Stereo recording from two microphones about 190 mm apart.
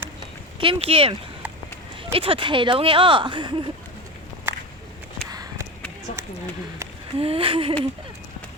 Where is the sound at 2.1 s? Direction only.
30° right (ahead or behind).